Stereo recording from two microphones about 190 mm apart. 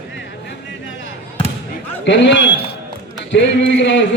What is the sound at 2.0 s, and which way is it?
A man's voice, 70° left (ahead or behind).